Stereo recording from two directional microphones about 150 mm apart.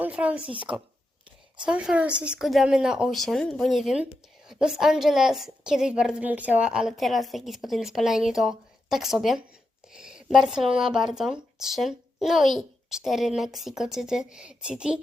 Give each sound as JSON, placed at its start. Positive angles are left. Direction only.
{"t": 0.0, "sound": "speech", "side_deg": -10}
{"t": 0.5, "sound": "speech", "side_deg": -35}
{"t": 1.5, "sound": "speech", "side_deg": -5}